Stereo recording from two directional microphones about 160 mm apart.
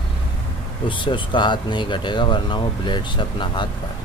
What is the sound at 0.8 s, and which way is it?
Speech, 30° left (ahead or behind).